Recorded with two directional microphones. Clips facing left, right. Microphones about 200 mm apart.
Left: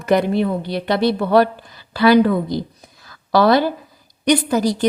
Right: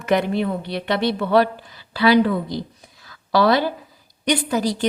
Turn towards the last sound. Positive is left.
turn(degrees=45)  # may be behind; listen again after turning